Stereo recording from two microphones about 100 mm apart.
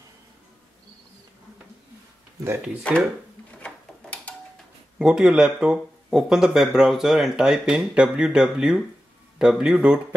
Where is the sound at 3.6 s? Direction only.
15° left (ahead or behind).